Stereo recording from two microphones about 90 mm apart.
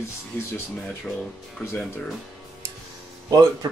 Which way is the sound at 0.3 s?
25° left (ahead or behind).